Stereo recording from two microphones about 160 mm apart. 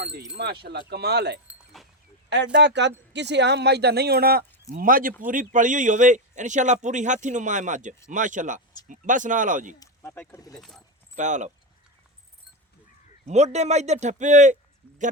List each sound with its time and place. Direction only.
0.0 s speech: 90° right
1.5 s a sound: centre (ahead or behind)
2.3 s speech: 90° right; by 9.7 s 55° right (ahead or behind)
9.8 s speech: 15° left (ahead or behind)
10.6 s speech: 5° left (ahead or behind)
11.2 s speech: 50° right (ahead or behind)
13.2 s speech: 45° right (ahead or behind)